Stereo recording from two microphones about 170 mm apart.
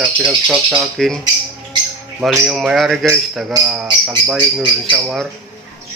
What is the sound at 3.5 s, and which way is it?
Speech, 25° right (ahead or behind).